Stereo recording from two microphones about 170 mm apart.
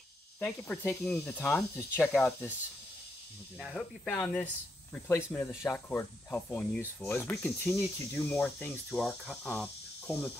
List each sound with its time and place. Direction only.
0.4 s cricket: 10° left (ahead or behind)
3.5 s cricket: 10° left (ahead or behind)